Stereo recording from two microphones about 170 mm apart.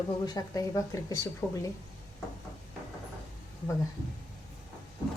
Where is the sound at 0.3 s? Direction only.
20° left (ahead or behind).